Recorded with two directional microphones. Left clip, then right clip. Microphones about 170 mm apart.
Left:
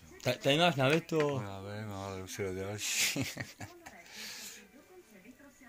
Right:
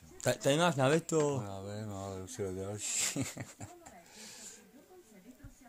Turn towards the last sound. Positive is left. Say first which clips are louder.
# left 6 dB
turn(degrees=0)  # may be behind; listen again after turning